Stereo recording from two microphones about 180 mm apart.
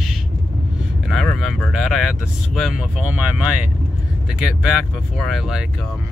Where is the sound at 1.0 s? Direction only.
Centre (ahead or behind).